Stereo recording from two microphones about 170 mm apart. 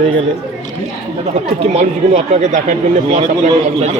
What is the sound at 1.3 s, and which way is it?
Speech, 40° right (ahead or behind).